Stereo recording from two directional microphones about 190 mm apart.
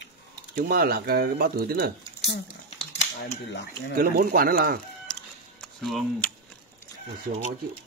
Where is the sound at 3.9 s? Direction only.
50° right (ahead or behind).